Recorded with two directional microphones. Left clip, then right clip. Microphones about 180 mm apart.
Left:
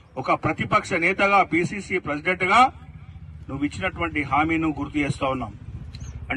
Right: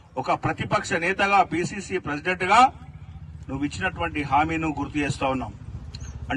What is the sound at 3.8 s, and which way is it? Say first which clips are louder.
Speech: left 1 dB; 15° left (ahead or behind).